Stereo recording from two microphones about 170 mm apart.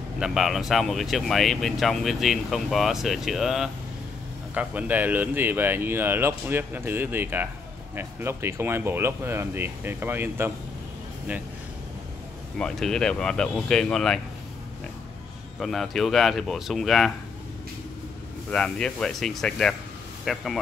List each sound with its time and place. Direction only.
0.2 s speech: centre (ahead or behind)
12.5 s speech: 5° left (ahead or behind)
15.6 s speech: centre (ahead or behind)
18.5 s speech: 5° left (ahead or behind)